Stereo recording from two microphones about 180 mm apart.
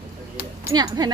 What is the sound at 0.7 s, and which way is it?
Speech, 20° right (ahead or behind).